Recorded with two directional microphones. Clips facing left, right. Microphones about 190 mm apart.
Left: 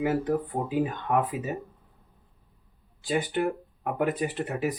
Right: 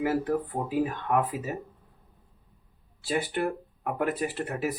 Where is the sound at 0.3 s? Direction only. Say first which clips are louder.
Left 1 dB; 15° left (ahead or behind).